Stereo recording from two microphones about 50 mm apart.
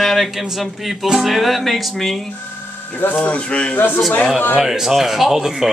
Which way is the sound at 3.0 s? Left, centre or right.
Left.